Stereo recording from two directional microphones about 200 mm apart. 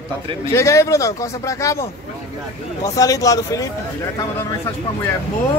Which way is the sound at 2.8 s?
15° left (ahead or behind).